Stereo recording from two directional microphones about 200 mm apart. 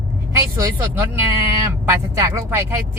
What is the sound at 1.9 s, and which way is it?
Speech, 15° right (ahead or behind).